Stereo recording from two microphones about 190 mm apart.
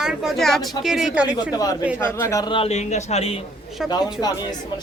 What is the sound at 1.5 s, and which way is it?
A man's voice, 20° left (ahead or behind).